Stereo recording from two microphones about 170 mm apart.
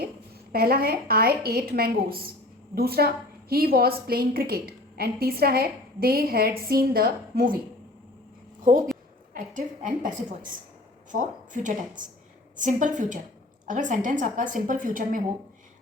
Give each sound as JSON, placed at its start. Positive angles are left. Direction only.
{"t": 0.5, "sound": "a woman's voice", "side_deg": -60}
{"t": 9.3, "sound": "a woman's voice", "side_deg": -50}